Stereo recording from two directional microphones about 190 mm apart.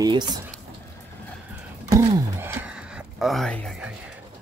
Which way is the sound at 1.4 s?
15° right (ahead or behind).